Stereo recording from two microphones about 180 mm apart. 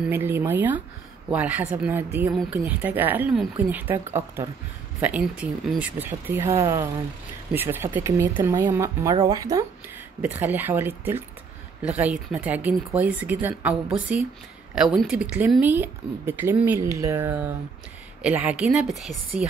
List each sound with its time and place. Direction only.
0.0 s speech: 10° right (ahead or behind)